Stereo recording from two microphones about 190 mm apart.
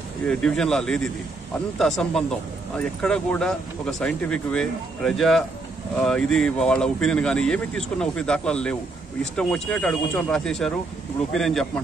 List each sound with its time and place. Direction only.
0.3 s speech: 5° left (ahead or behind)